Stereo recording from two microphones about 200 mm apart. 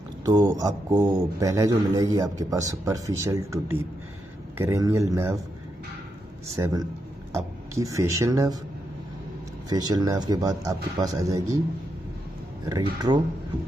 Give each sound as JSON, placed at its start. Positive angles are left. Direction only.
{"t": 0.2, "sound": "a man's voice", "side_deg": -20}
{"t": 6.6, "sound": "a man's voice", "side_deg": -20}
{"t": 9.7, "sound": "a man's voice", "side_deg": -20}
{"t": 12.6, "sound": "speech", "side_deg": -20}